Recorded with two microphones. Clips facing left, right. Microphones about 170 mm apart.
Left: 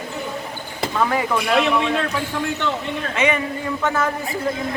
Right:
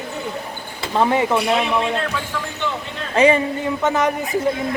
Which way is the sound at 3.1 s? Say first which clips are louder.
Right 7 dB; 35° right (ahead or behind).